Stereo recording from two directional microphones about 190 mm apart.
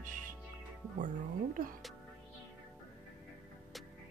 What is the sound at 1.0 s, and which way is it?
Speech, 45° right (ahead or behind).